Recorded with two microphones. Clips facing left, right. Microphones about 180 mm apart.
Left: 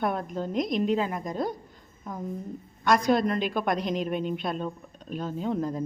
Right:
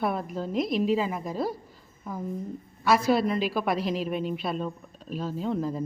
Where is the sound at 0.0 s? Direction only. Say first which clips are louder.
Even; 5° right (ahead or behind).